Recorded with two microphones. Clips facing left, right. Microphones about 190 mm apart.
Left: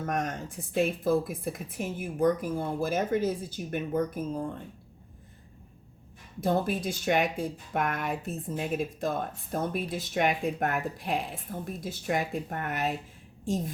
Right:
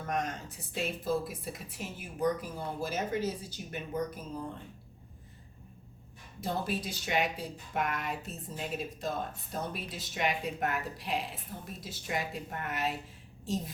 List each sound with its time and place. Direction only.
0.1 s speech: 50° left (ahead or behind)
6.4 s speech: 50° left (ahead or behind)